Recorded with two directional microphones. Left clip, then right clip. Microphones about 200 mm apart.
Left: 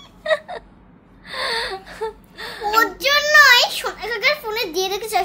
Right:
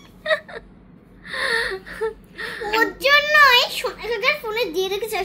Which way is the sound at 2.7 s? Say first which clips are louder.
Even; 35° left (ahead or behind).